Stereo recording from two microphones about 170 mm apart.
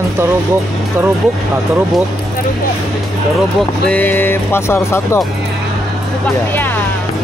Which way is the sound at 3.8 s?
10° left (ahead or behind).